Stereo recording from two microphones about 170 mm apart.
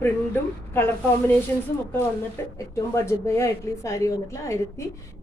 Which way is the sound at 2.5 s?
15° left (ahead or behind).